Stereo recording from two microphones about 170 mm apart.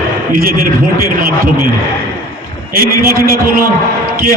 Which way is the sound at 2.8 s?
60° right (ahead or behind).